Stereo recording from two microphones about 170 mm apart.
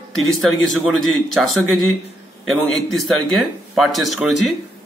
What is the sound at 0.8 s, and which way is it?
A man's voice, centre (ahead or behind).